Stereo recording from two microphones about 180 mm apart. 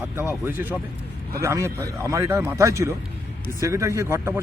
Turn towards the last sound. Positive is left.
turn(degrees=-15)  # may be behind; listen again after turning